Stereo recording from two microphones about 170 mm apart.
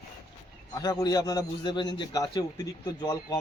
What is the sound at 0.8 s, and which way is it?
Speech, 25° left (ahead or behind).